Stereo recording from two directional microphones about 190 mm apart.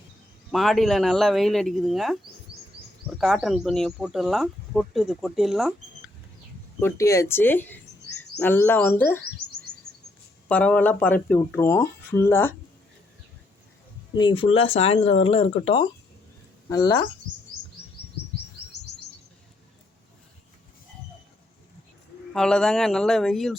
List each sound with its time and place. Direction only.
0.5 s speech: centre (ahead or behind)
3.2 s speech: centre (ahead or behind)
6.7 s speech: 15° left (ahead or behind)
10.5 s speech: 5° left (ahead or behind)
14.2 s speech: 25° left (ahead or behind)
22.3 s speech: 5° left (ahead or behind)